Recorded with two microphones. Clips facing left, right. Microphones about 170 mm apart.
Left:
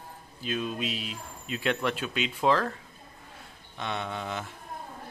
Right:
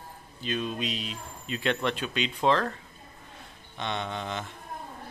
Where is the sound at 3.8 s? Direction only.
5° left (ahead or behind).